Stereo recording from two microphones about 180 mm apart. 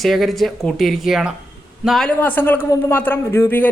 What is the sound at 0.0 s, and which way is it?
Speech, centre (ahead or behind).